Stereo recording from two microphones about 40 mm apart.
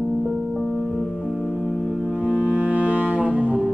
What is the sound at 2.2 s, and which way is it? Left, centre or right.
Music, right.